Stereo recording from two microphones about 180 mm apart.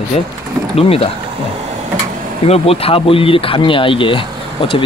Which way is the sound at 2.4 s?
35° left (ahead or behind).